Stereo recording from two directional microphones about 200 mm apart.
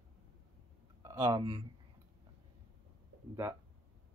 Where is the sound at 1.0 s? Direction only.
15° right (ahead or behind).